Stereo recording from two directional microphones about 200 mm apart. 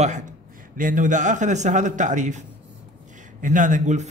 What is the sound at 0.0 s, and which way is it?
Speech, 40° right (ahead or behind).